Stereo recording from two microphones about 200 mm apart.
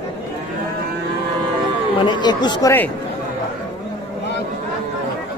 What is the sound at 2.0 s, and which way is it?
Speech, 20° left (ahead or behind).